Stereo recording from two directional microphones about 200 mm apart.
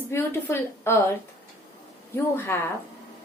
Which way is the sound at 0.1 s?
10° left (ahead or behind).